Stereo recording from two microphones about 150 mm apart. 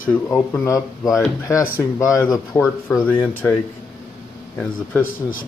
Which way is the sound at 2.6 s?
5° left (ahead or behind).